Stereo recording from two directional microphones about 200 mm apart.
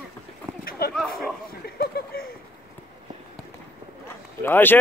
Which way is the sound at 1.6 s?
50° left (ahead or behind).